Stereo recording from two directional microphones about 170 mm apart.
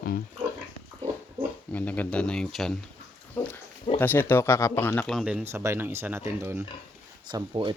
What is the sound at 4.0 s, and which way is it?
Speech, 10° left (ahead or behind).